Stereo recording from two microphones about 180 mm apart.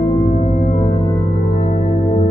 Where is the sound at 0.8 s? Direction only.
25° left (ahead or behind).